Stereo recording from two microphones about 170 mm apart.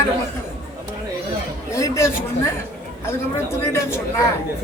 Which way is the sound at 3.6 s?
15° left (ahead or behind).